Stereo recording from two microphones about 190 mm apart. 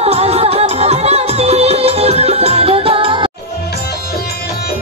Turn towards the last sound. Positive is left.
turn(degrees=-25)  # may be behind; listen again after turning